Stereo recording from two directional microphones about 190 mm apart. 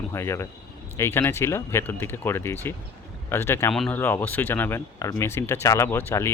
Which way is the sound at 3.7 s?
Centre (ahead or behind).